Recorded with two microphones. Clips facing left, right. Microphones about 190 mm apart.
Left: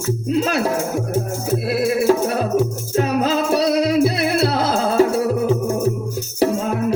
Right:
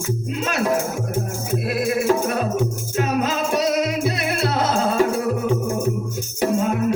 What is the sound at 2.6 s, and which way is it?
Music, 35° left (ahead or behind).